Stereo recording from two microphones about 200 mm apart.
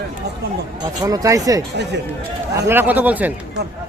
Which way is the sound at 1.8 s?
60° right (ahead or behind).